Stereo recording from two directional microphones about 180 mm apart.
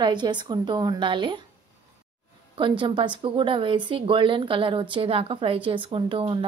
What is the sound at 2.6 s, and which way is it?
Speech, 25° right (ahead or behind).